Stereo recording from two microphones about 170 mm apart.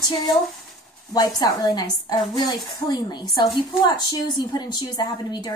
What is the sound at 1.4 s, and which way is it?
A woman's voice, 20° left (ahead or behind).